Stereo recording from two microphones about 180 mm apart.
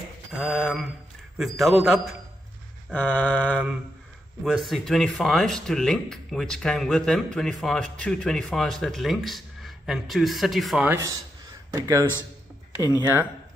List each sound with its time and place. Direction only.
0.4 s speech: centre (ahead or behind)
2.9 s a sound: 5° left (ahead or behind)
4.5 s speech: centre (ahead or behind)
11.7 s speech: 20° right (ahead or behind)